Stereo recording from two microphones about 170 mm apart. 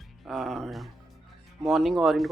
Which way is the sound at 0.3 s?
Centre (ahead or behind).